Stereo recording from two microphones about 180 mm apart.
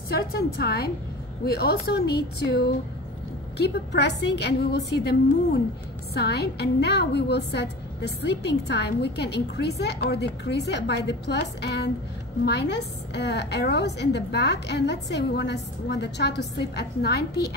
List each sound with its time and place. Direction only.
0.1 s a woman's voice: 60° left (ahead or behind)